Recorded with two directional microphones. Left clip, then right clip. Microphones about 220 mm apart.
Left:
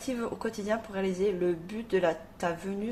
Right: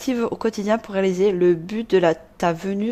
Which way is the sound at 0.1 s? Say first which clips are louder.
Right 11 dB; 45° right (ahead or behind).